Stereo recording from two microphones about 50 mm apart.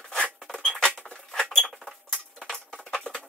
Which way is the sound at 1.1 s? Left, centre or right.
Centre.